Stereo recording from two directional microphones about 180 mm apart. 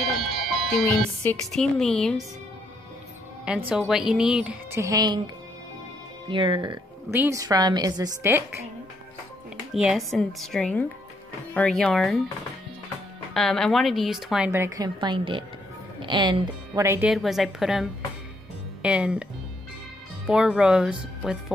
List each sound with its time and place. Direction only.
0.2 s music: centre (ahead or behind)
1.5 s speech: 5° left (ahead or behind)
3.4 s a woman's voice: 5° right (ahead or behind); by 6.8 s 25° right (ahead or behind)
7.1 s a woman's voice: 15° right (ahead or behind)
9.8 s speech: centre (ahead or behind)
13.3 s speech: centre (ahead or behind)
14.5 s a woman's voice: 15° right (ahead or behind)
17.1 s speech: centre (ahead or behind)
20.2 s speech: 5° right (ahead or behind)